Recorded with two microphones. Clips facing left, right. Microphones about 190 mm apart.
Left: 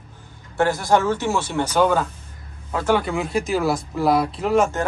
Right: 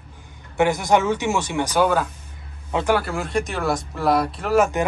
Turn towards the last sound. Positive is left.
turn(degrees=-10)  # may be behind; listen again after turning